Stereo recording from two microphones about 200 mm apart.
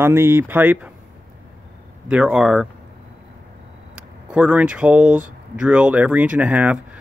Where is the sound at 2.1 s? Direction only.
5° right (ahead or behind).